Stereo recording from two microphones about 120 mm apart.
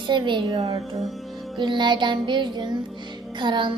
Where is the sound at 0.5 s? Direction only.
60° right (ahead or behind).